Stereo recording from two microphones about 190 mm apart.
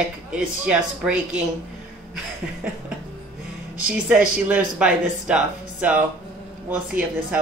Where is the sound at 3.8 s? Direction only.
10° right (ahead or behind).